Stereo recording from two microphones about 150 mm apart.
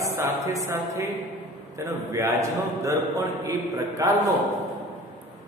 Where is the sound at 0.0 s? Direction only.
20° right (ahead or behind).